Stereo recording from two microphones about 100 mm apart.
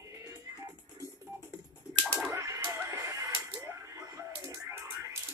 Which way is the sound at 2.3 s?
35° right (ahead or behind).